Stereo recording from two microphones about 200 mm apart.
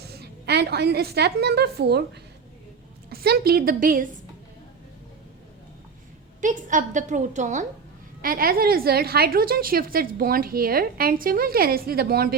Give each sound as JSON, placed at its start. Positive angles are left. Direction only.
{"t": 0.0, "sound": "a woman's voice", "side_deg": -55}
{"t": 3.1, "sound": "a woman's voice", "side_deg": -50}
{"t": 6.4, "sound": "a woman's voice", "side_deg": -40}